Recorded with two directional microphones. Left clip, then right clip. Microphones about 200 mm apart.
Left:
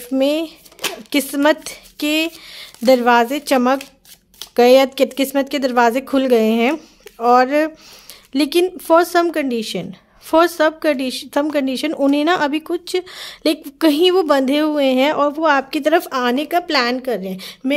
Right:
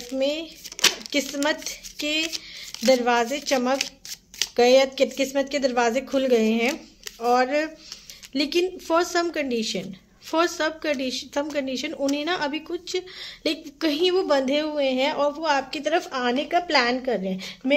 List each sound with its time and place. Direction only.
0.2 s speech: 50° left (ahead or behind)
0.8 s a sound: 10° left (ahead or behind)
1.1 s speech: 50° left (ahead or behind)